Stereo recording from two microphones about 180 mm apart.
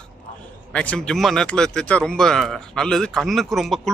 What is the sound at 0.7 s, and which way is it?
Speech, 5° left (ahead or behind).